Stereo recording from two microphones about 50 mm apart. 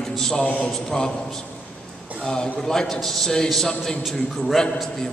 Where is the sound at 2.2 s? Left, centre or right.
Centre.